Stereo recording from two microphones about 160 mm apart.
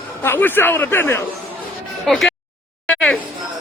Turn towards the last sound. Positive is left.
turn(degrees=5)  # may be behind; listen again after turning